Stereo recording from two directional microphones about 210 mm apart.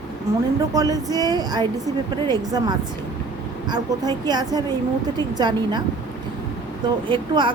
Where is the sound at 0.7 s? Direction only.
15° right (ahead or behind).